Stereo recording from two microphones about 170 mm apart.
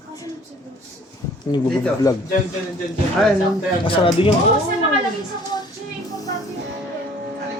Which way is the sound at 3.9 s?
30° left (ahead or behind).